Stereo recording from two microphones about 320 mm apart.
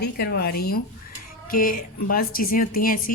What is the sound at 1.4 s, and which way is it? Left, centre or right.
Music, left.